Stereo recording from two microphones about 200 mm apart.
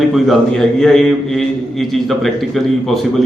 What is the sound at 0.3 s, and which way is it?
A man's voice, centre (ahead or behind).